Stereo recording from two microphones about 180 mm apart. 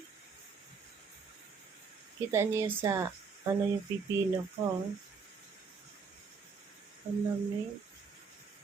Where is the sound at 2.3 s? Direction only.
15° right (ahead or behind).